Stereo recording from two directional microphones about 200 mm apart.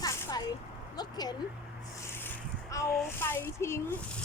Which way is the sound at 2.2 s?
15° left (ahead or behind).